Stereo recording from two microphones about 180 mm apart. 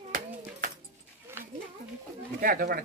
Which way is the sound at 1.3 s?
10° right (ahead or behind).